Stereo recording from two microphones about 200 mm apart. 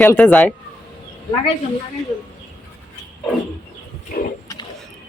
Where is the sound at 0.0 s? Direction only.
10° left (ahead or behind).